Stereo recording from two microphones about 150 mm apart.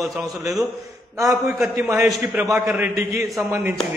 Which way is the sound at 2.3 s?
20° right (ahead or behind).